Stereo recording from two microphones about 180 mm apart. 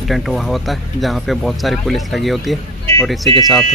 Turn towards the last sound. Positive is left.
turn(degrees=0)  # may be behind; listen again after turning